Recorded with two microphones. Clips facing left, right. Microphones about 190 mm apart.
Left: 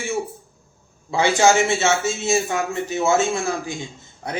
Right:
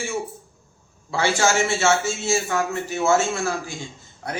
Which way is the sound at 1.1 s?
15° left (ahead or behind).